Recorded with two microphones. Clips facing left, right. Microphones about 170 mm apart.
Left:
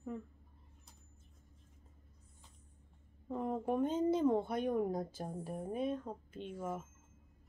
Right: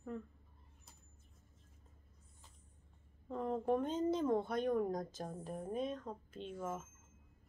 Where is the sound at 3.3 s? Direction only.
10° left (ahead or behind).